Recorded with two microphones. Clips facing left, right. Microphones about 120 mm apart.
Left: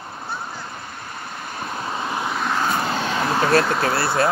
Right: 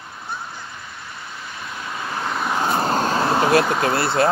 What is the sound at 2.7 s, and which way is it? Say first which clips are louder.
Vehicle: right 3 dB; 40° right (ahead or behind).